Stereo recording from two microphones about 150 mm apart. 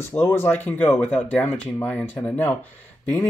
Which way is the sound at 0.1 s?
15° left (ahead or behind).